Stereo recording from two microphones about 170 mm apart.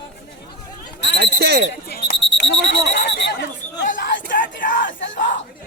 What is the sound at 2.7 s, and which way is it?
Speech, 90° left.